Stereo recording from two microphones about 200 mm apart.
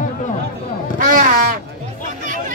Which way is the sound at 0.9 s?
40° right (ahead or behind).